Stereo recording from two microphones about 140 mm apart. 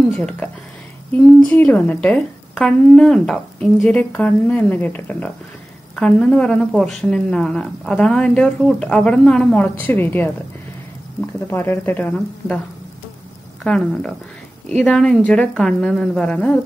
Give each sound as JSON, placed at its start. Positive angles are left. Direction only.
{"t": 0.1, "sound": "a woman's voice", "side_deg": 5}
{"t": 13.7, "sound": "a woman's voice", "side_deg": 5}